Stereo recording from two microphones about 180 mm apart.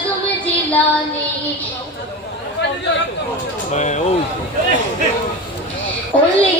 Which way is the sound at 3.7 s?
40° left (ahead or behind).